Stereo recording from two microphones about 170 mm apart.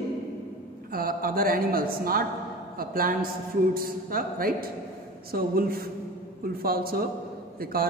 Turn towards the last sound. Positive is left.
turn(degrees=-60)  # may be behind; listen again after turning